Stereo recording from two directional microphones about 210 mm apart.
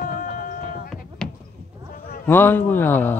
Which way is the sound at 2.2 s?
10° left (ahead or behind).